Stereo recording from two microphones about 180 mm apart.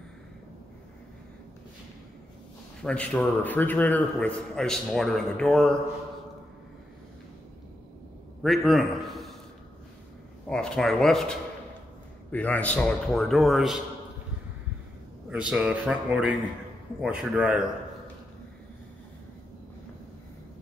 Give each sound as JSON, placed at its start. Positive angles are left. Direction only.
{"t": 2.8, "sound": "a man's voice", "side_deg": 5}
{"t": 8.4, "sound": "a man's voice", "side_deg": 0}
{"t": 10.4, "sound": "a man's voice", "side_deg": 5}
{"t": 15.2, "sound": "a man's voice", "side_deg": -5}